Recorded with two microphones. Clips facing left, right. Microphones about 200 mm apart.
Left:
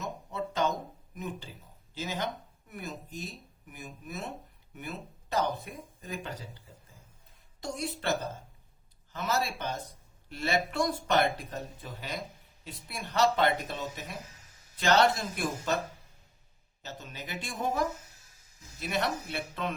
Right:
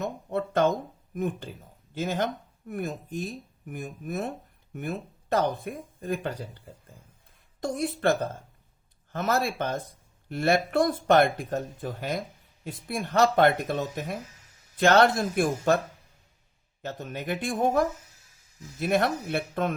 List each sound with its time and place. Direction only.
0.0 s a sound: 60° right (ahead or behind)
1.1 s speech: 50° right (ahead or behind)
16.8 s speech: 55° right (ahead or behind)